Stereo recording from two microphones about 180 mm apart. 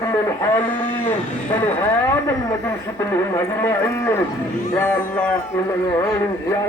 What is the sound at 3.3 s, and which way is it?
Speech, 15° left (ahead or behind).